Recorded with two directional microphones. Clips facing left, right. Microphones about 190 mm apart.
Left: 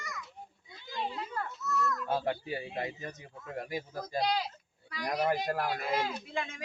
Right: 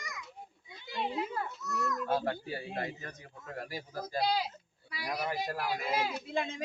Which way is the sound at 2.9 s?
20° left (ahead or behind).